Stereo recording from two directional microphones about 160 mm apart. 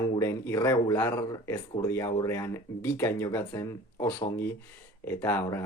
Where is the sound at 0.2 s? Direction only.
15° left (ahead or behind).